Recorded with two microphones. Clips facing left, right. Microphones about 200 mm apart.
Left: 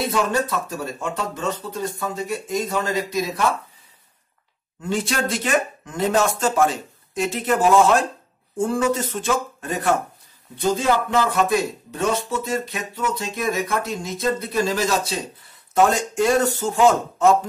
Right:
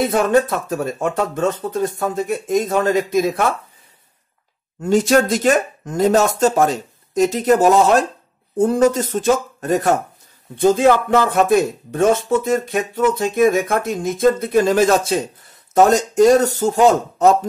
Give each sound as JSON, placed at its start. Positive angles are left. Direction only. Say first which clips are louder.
{"t": 0.1, "sound": "speech", "louder": "right 6 dB", "side_deg": -50}
{"t": 4.8, "sound": "speech", "louder": "right 9 dB", "side_deg": -45}
{"t": 10.6, "sound": "speech", "louder": "right 7 dB", "side_deg": -55}
{"t": 15.7, "sound": "speech", "louder": "right 5 dB", "side_deg": -40}